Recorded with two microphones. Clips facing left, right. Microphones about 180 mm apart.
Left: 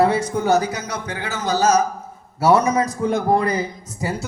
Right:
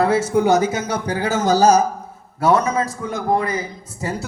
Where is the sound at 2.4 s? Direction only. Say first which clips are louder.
Left 1 dB; 10° left (ahead or behind).